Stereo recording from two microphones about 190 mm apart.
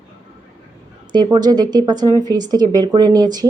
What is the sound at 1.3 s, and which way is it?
Speech, 20° right (ahead or behind).